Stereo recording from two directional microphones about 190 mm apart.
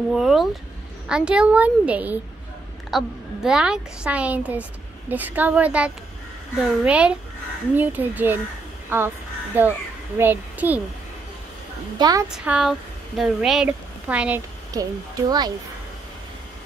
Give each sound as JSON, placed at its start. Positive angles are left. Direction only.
{"t": 0.1, "sound": "a woman's voice", "side_deg": 0}
{"t": 12.0, "sound": "a child's voice", "side_deg": -20}
{"t": 12.3, "sound": "a woman's voice", "side_deg": -5}
{"t": 14.7, "sound": "a child's voice", "side_deg": -20}